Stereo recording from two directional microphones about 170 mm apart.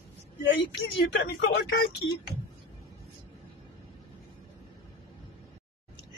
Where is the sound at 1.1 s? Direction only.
80° left.